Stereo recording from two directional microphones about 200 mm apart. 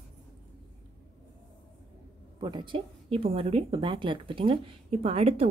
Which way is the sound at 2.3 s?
25° right (ahead or behind).